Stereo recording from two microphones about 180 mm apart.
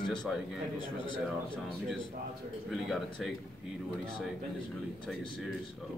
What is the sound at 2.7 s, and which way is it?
Speech, centre (ahead or behind).